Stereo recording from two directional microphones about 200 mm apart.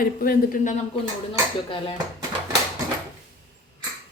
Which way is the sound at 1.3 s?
25° left (ahead or behind).